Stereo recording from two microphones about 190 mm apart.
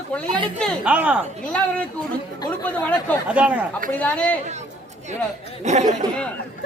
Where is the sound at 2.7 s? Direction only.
10° left (ahead or behind).